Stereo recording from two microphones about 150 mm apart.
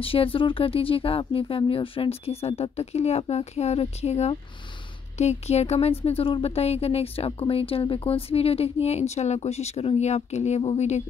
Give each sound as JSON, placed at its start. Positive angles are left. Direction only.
{"t": 0.0, "sound": "speech", "side_deg": 40}